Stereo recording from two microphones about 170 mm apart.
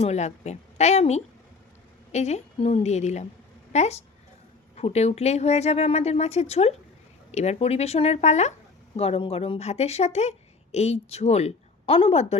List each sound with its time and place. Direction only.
0.0 s a woman's voice: 40° left (ahead or behind)